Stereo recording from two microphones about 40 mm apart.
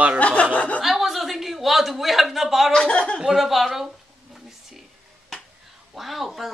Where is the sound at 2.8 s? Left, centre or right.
Left.